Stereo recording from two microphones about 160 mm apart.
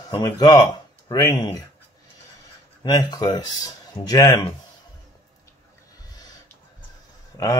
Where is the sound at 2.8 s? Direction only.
25° left (ahead or behind).